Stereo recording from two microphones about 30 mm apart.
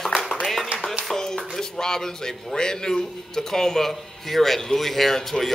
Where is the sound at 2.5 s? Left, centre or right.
Left.